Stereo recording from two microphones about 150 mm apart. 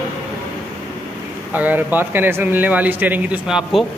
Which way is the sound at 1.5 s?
10° right (ahead or behind).